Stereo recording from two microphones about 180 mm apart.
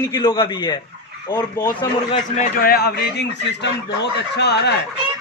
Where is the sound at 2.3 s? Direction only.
50° left (ahead or behind); by 4.7 s 70° left (ahead or behind).